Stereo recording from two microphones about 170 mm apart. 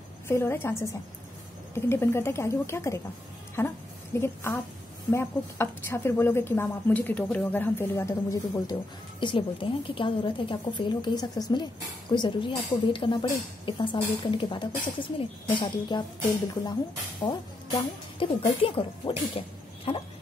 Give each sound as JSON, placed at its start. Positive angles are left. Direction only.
{"t": 0.3, "sound": "speech", "side_deg": 15}
{"t": 1.9, "sound": "a woman's voice", "side_deg": 15}
{"t": 9.2, "sound": "a woman's voice", "side_deg": 30}
{"t": 17.2, "sound": "a sound", "side_deg": 25}
{"t": 18.2, "sound": "speech", "side_deg": 30}